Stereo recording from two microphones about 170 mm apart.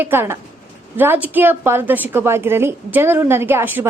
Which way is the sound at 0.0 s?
15° right (ahead or behind).